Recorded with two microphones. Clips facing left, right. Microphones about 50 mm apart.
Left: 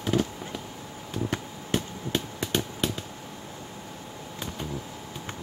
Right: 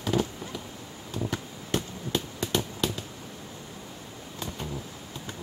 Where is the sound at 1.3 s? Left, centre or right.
Left.